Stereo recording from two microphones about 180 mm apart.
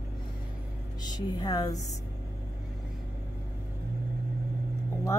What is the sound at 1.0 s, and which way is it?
Speech, 20° left (ahead or behind).